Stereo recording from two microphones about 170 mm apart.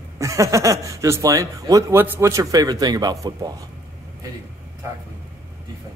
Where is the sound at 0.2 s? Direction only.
20° right (ahead or behind).